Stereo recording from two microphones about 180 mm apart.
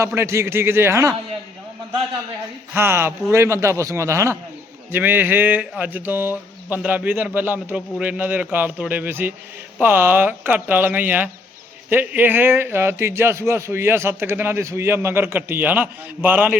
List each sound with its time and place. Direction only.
0.0 s a man's voice: 15° right (ahead or behind)
2.7 s a man's voice: 10° right (ahead or behind)